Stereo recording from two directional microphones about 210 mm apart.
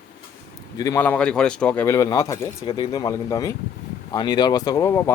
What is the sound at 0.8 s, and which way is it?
Speech, 10° left (ahead or behind).